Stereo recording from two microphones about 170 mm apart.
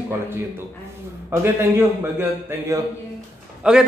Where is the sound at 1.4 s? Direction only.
15° right (ahead or behind).